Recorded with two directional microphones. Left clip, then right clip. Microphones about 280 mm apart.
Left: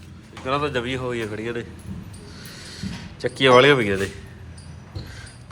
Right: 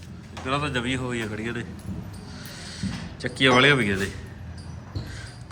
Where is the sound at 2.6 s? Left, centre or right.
Centre.